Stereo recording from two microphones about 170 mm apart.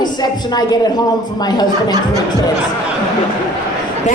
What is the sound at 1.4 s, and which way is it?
Speech, 25° left (ahead or behind).